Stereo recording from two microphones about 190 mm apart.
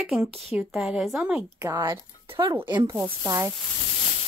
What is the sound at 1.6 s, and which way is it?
Speech, 20° right (ahead or behind).